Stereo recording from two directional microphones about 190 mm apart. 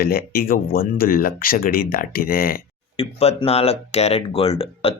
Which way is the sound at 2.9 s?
30° left (ahead or behind).